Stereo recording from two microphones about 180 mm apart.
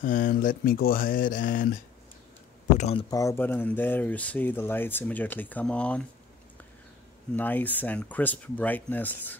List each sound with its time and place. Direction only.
0.0 s speech: 50° left (ahead or behind)
2.8 s speech: 35° left (ahead or behind)
3.1 s speech: 15° left (ahead or behind)
7.3 s speech: 10° left (ahead or behind)